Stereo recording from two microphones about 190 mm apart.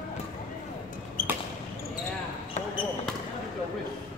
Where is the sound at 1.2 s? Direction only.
50° left (ahead or behind).